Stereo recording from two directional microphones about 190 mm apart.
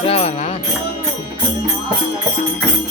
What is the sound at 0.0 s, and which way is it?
Music, 30° left (ahead or behind).